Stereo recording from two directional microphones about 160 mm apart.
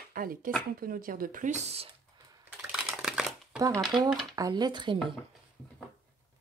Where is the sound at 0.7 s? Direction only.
65° right (ahead or behind); by 1.9 s 40° right (ahead or behind).